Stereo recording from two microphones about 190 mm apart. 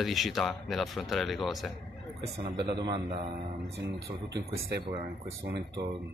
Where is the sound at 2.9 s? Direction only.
35° right (ahead or behind).